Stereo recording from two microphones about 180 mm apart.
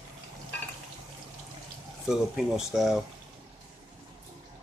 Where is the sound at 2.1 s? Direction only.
5° right (ahead or behind).